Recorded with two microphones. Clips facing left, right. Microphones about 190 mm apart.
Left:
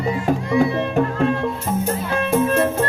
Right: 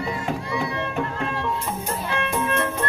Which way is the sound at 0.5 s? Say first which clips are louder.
Left 11 dB; 40° left (ahead or behind).